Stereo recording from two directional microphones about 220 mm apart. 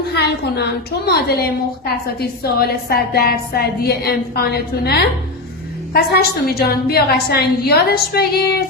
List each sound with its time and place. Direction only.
0.1 s a woman's voice: 50° left (ahead or behind)